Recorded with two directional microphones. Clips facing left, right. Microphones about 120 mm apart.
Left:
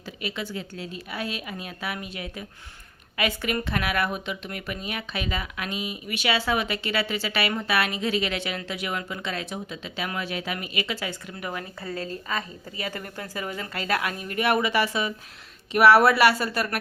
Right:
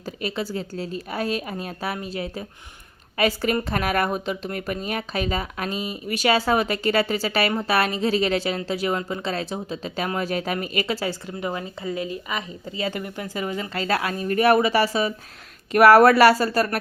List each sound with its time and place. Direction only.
0.0 s speech: 40° right (ahead or behind)